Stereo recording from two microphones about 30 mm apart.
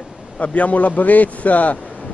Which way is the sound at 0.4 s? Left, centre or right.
Left.